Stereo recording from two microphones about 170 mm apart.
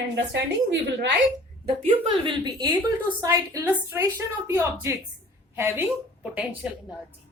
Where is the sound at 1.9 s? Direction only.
25° right (ahead or behind).